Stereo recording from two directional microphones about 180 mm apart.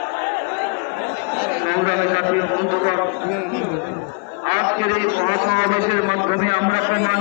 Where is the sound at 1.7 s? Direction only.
35° left (ahead or behind).